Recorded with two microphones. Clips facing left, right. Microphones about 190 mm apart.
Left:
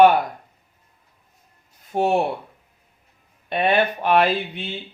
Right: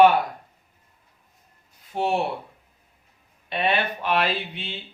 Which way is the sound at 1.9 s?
45° left (ahead or behind).